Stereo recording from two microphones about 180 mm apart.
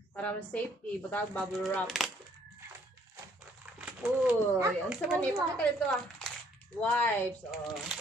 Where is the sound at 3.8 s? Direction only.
5° right (ahead or behind).